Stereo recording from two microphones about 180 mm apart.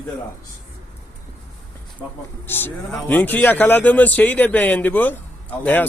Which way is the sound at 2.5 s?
10° left (ahead or behind).